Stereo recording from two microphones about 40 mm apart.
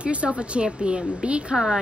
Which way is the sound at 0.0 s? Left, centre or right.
Right.